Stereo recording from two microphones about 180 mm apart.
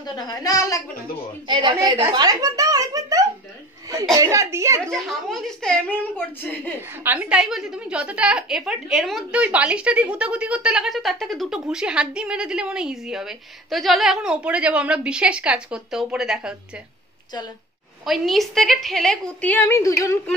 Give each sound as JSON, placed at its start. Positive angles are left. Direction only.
{"t": 0.0, "sound": "a woman's voice", "side_deg": 20}
{"t": 1.5, "sound": "a child's voice", "side_deg": -25}
{"t": 4.9, "sound": "a woman's voice", "side_deg": 0}
{"t": 6.9, "sound": "a woman's voice", "side_deg": -10}
{"t": 18.0, "sound": "a woman's voice", "side_deg": 0}